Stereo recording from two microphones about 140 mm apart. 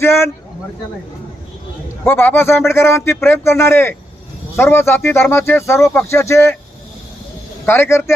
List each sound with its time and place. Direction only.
0.0 s a man's voice: 20° left (ahead or behind)
2.0 s a man's voice: 15° left (ahead or behind)
7.6 s a man's voice: 15° left (ahead or behind)